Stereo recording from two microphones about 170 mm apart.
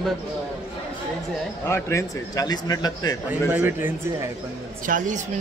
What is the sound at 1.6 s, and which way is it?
A man's voice, 15° left (ahead or behind).